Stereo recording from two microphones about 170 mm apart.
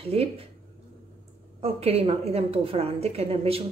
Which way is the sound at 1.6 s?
35° right (ahead or behind).